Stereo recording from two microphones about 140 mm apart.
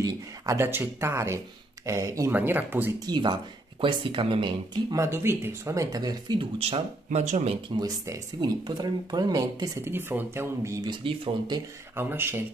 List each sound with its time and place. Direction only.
0.0 s speech: 20° right (ahead or behind)
3.1 s speech: 35° right (ahead or behind)
4.9 s speech: 20° right (ahead or behind)
6.6 s speech: 50° right (ahead or behind)
7.7 s speech: 30° right (ahead or behind)
10.9 s speech: 35° right (ahead or behind)
11.9 s speech: 15° right (ahead or behind)